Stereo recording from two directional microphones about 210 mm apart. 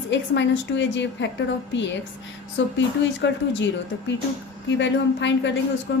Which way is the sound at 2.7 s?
60° left (ahead or behind).